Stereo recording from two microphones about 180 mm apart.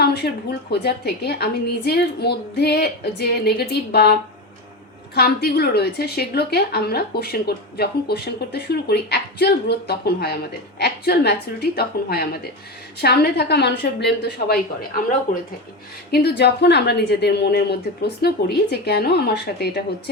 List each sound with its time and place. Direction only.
0.0 s a sound: 65° left (ahead or behind)
0.7 s a woman's voice: 65° left (ahead or behind)
16.1 s a woman's voice: 65° left (ahead or behind)